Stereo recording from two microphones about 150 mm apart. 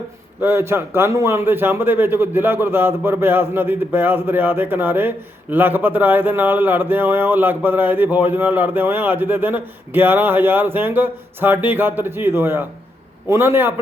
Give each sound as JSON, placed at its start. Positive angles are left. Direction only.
{"t": 0.4, "sound": "a man's voice", "side_deg": -15}